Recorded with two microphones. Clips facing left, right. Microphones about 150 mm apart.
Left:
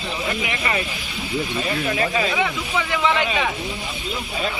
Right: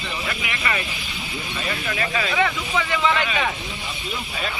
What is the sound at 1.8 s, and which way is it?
Speech, 35° left (ahead or behind).